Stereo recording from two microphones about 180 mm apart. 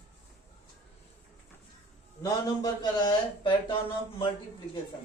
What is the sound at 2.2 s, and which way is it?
Speech, 20° left (ahead or behind).